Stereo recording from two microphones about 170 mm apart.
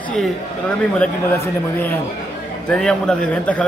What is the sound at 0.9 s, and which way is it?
A man's voice, 10° left (ahead or behind).